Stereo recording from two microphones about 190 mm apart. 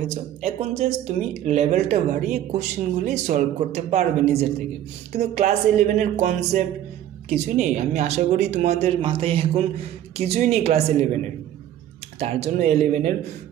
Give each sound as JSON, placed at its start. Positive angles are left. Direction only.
{"t": 0.1, "sound": "speech", "side_deg": -35}
{"t": 8.8, "sound": "speech", "side_deg": -25}
{"t": 12.2, "sound": "speech", "side_deg": -35}